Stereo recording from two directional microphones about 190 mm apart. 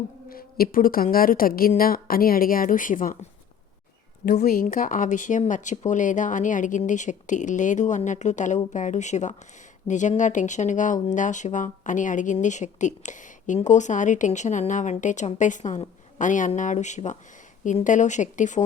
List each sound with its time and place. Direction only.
0.3 s a woman's voice: 50° left (ahead or behind)
4.4 s speech: 45° left (ahead or behind)